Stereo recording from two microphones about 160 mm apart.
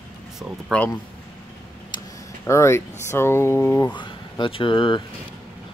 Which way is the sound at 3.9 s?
30° left (ahead or behind).